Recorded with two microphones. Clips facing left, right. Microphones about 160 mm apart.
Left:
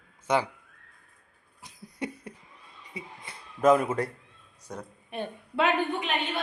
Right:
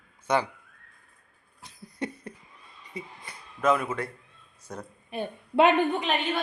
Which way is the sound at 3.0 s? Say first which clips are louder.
Right 3 dB; 10° left (ahead or behind).